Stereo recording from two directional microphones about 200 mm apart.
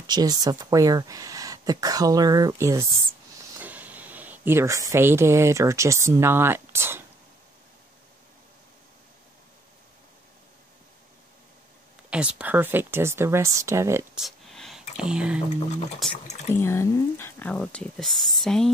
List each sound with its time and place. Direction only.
0.0 s speech: 20° right (ahead or behind)
12.1 s speech: 5° right (ahead or behind)
14.1 s a sound: centre (ahead or behind)
16.4 s speech: 10° left (ahead or behind)